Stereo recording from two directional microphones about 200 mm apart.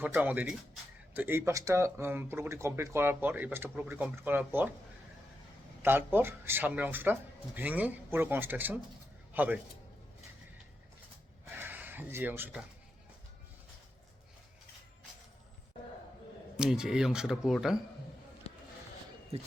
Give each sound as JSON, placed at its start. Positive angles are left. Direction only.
{"t": 0.0, "sound": "speech", "side_deg": -10}
{"t": 5.8, "sound": "a man's voice", "side_deg": -10}
{"t": 11.5, "sound": "a sound", "side_deg": -10}
{"t": 16.6, "sound": "speech", "side_deg": -5}
{"t": 18.5, "sound": "basketball bounce", "side_deg": 30}